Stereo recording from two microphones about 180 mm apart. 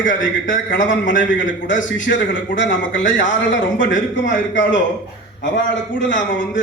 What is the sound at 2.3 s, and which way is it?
A man's voice, 90° left.